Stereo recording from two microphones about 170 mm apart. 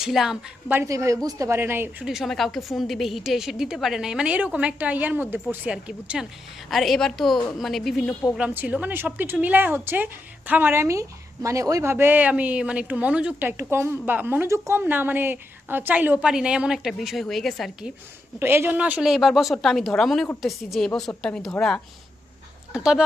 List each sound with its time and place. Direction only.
0.0 s a woman's voice: centre (ahead or behind)
0.8 s speech: 20° right (ahead or behind)
2.0 s a woman's voice: centre (ahead or behind)
18.3 s a woman's voice: 15° right (ahead or behind)